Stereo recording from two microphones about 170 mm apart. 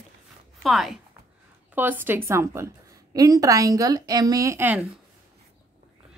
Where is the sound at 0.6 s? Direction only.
Centre (ahead or behind).